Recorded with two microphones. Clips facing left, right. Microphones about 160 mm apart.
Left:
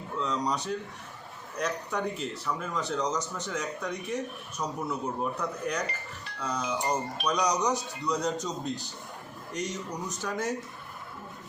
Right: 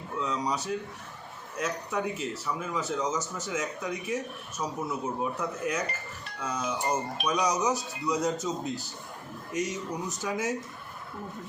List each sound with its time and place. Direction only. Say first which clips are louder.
0.2 s speech: even; centre (ahead or behind)